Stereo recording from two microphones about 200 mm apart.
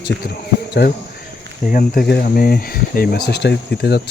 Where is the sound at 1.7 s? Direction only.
45° left (ahead or behind).